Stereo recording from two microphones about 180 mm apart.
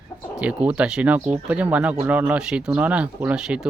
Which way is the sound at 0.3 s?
5° right (ahead or behind).